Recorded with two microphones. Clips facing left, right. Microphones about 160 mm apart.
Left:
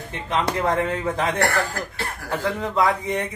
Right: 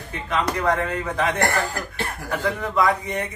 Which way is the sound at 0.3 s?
25° left (ahead or behind).